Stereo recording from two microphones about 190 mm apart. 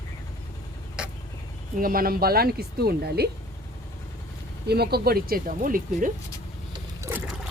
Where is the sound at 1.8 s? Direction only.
50° right (ahead or behind).